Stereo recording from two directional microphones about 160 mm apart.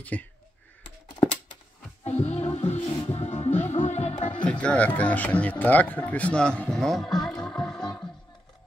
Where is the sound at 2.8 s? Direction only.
25° left (ahead or behind).